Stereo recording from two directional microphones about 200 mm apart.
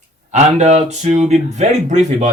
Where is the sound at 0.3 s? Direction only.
35° right (ahead or behind).